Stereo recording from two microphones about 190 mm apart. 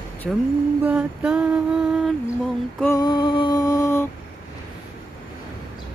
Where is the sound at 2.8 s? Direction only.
20° left (ahead or behind).